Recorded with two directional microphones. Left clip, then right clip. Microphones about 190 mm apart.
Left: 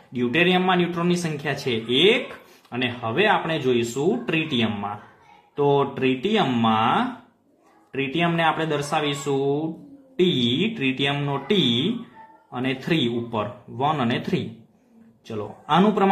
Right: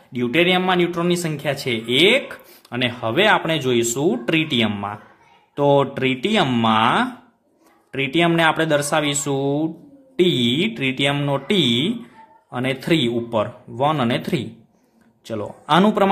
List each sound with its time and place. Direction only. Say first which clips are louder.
0.1 s a man's voice: right 3 dB; 30° right (ahead or behind)
2.7 s speech: right 4 dB; 45° right (ahead or behind)